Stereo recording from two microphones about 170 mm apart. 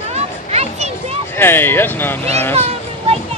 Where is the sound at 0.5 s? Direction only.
40° right (ahead or behind).